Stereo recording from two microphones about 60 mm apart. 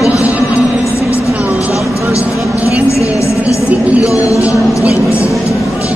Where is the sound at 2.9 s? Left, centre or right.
Left.